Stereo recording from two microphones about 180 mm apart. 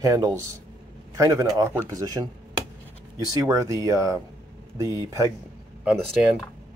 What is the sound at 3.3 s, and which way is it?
Speech, 20° right (ahead or behind).